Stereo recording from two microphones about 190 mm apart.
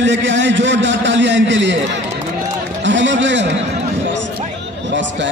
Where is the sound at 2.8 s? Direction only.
70° right (ahead or behind).